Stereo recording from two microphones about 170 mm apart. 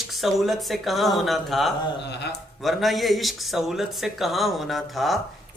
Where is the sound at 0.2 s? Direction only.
Centre (ahead or behind).